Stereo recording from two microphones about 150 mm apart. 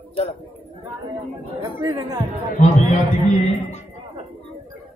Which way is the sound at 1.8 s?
20° right (ahead or behind).